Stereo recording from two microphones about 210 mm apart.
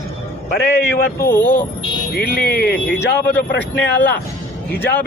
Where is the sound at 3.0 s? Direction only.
55° left (ahead or behind).